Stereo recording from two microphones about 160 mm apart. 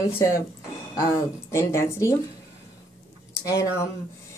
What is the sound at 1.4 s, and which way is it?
Speech, 15° left (ahead or behind).